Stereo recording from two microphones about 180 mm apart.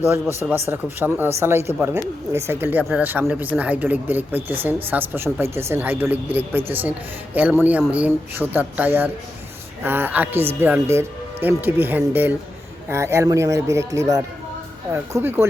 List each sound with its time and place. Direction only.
0.7 s speech: 10° right (ahead or behind)